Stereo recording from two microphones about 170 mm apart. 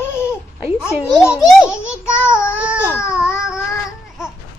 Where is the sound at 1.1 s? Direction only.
Centre (ahead or behind).